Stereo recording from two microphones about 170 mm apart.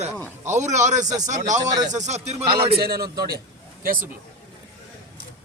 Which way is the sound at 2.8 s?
65° right (ahead or behind).